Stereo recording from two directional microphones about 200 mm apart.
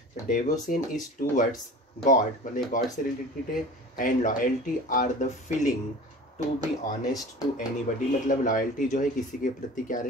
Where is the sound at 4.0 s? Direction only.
40° left (ahead or behind).